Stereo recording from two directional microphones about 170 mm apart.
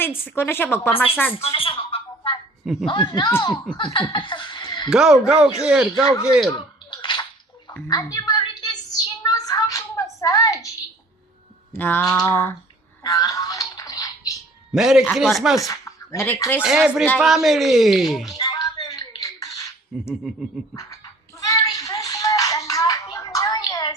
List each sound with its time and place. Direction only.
0.3 s a sound: 15° left (ahead or behind)
1.4 s a woman's voice: 35° left (ahead or behind)
4.9 s speech: 5° right (ahead or behind)
6.9 s bathtub: 25° left (ahead or behind)
7.9 s a woman's voice: 20° left (ahead or behind)
8.4 s a sound: 25° left (ahead or behind)
11.7 s a sound: 10° left (ahead or behind)
13.0 s music: 20° left (ahead or behind)
14.7 s a man's voice: centre (ahead or behind)
15.6 s speech: 15° left (ahead or behind)
16.6 s speech: 5° right (ahead or behind)
18.3 s a sound: 20° left (ahead or behind)
19.9 s speech: 5° right (ahead or behind)
20.7 s music: 20° left (ahead or behind)